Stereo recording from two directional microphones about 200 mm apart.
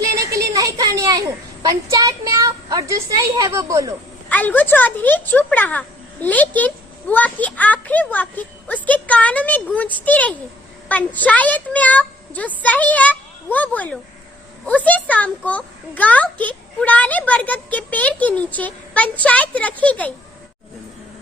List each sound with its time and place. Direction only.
0.3 s a sound: 15° right (ahead or behind)
1.6 s a woman's voice: 15° right (ahead or behind)
4.3 s speech: 10° left (ahead or behind)